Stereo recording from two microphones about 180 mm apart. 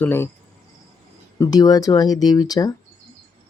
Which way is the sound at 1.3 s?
20° left (ahead or behind).